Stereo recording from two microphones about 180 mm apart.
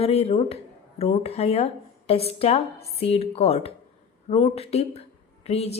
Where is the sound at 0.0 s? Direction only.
35° left (ahead or behind).